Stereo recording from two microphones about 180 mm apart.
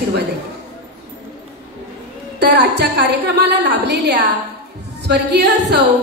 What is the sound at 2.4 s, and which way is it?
A woman's voice, 70° right (ahead or behind).